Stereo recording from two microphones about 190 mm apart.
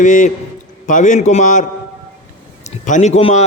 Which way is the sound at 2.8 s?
40° left (ahead or behind).